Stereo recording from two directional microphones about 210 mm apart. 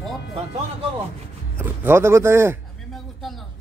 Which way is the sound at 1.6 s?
10° right (ahead or behind).